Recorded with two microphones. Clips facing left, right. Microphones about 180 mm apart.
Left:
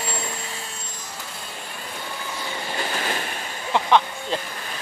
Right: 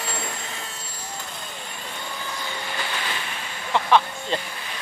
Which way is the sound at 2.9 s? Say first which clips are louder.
Left 4 dB; 45° left (ahead or behind).